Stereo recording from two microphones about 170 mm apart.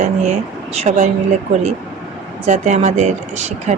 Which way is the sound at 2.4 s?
45° right (ahead or behind).